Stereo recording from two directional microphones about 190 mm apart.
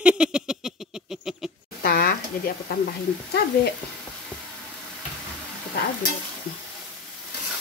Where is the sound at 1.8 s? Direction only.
50° left (ahead or behind).